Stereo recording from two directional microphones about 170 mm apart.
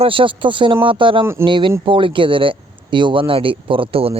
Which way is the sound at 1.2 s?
15° right (ahead or behind).